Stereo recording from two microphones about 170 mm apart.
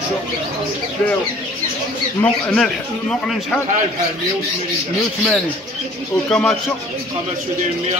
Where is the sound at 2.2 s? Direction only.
5° left (ahead or behind).